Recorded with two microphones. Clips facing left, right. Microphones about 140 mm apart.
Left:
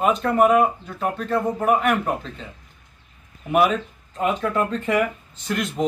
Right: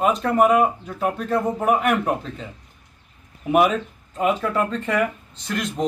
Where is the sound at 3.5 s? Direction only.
Centre (ahead or behind).